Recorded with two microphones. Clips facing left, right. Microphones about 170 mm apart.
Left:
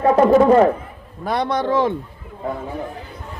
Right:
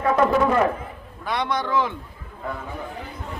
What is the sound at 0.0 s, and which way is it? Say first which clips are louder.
Speech: left 6 dB; 35° left (ahead or behind).